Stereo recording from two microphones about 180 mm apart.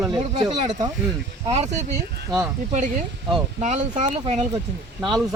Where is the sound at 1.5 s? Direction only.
40° right (ahead or behind).